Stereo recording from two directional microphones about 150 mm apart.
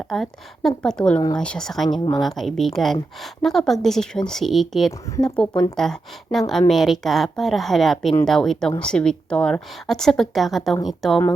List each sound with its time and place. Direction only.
0.0 s speech: centre (ahead or behind)
1.9 s speech: 25° left (ahead or behind)
2.2 s speech: centre (ahead or behind)
4.9 s speech: 20° left (ahead or behind)
5.7 s speech: centre (ahead or behind)